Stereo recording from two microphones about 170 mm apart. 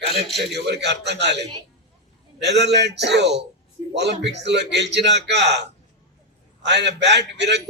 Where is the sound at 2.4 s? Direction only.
90° right.